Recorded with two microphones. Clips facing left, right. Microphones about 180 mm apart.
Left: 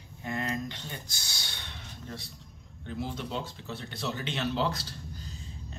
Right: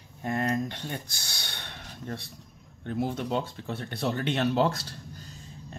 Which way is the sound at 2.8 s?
55° right (ahead or behind).